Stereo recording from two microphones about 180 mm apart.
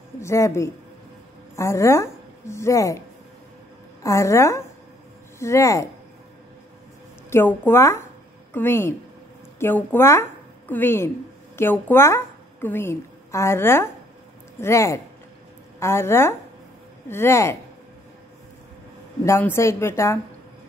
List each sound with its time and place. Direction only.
0.2 s a woman's voice: 15° left (ahead or behind)
4.0 s a woman's voice: 15° left (ahead or behind)
7.2 s a woman's voice: 10° left (ahead or behind)
19.2 s a woman's voice: 15° left (ahead or behind)